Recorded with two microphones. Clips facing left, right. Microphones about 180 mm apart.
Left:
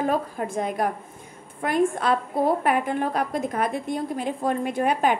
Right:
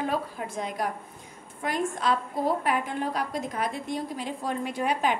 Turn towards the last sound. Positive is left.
turn(degrees=50)  # may be behind; listen again after turning